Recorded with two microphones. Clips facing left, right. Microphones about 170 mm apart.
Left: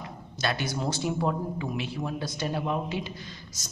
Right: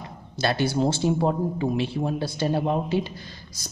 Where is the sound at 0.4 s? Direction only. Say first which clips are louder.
Right 7 dB; 30° right (ahead or behind).